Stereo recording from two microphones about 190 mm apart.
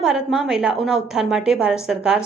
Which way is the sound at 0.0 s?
5° right (ahead or behind).